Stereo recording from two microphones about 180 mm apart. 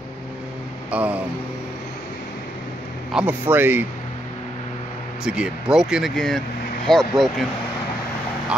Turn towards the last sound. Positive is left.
turn(degrees=0)  # may be behind; listen again after turning